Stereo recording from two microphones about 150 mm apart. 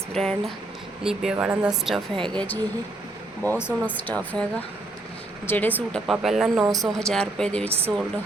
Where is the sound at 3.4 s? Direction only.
10° left (ahead or behind).